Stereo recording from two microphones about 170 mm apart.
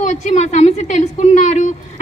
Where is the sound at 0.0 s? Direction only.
45° left (ahead or behind).